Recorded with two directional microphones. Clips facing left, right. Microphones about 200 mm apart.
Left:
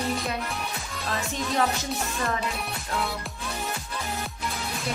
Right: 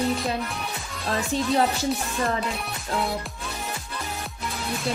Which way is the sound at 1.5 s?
30° right (ahead or behind).